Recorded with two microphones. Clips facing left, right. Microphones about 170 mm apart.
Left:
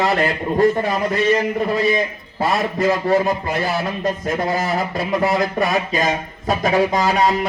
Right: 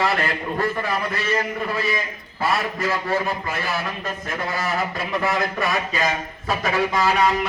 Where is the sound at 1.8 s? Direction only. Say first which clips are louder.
Left 7 dB; 20° left (ahead or behind).